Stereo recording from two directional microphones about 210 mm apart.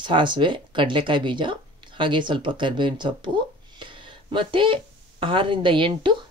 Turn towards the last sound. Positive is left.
turn(degrees=-25)  # may be behind; listen again after turning